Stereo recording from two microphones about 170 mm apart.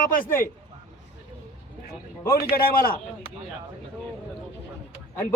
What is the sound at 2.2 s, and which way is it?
Speech, 60° left (ahead or behind).